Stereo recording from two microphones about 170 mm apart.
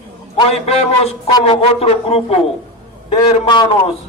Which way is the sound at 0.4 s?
35° left (ahead or behind).